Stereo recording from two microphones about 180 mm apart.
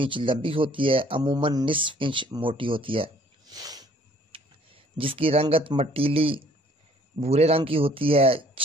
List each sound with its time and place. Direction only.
0.0 s speech: 30° right (ahead or behind)
4.9 s a man's voice: 30° right (ahead or behind)